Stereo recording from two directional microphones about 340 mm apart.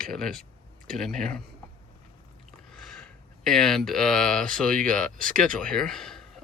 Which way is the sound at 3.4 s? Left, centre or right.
Centre.